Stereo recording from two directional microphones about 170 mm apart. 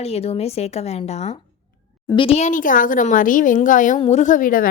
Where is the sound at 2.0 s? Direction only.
30° left (ahead or behind).